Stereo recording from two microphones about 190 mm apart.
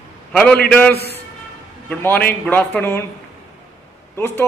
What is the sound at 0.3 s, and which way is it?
A man's voice, 10° left (ahead or behind).